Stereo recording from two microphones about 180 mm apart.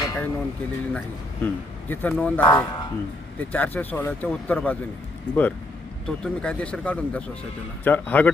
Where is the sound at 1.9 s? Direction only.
10° left (ahead or behind).